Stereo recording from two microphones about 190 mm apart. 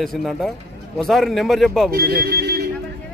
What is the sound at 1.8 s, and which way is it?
Speech, 55° right (ahead or behind).